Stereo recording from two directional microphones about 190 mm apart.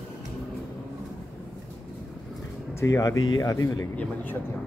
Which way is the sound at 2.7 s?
15° left (ahead or behind).